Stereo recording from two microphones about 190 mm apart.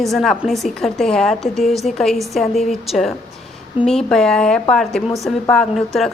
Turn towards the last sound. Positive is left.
turn(degrees=0)  # may be behind; listen again after turning